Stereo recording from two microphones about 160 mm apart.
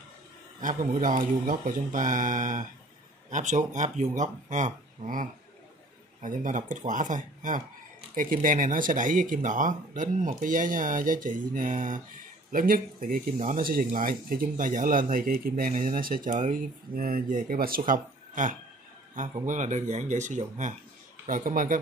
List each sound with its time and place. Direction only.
0.6 s speech: 55° right (ahead or behind)